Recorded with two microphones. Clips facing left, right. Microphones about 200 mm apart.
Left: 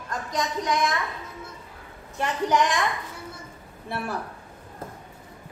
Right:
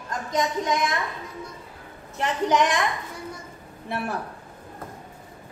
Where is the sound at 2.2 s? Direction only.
20° right (ahead or behind).